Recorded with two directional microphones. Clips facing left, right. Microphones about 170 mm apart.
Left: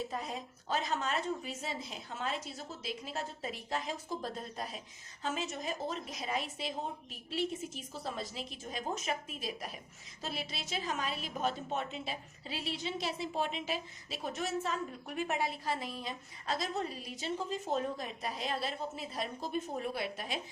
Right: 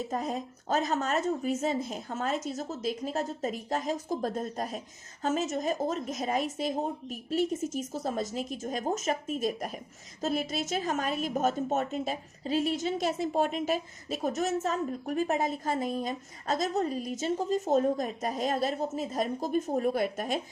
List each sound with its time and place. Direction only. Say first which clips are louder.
0.1 s a woman's voice: right 7 dB; 45° right (ahead or behind)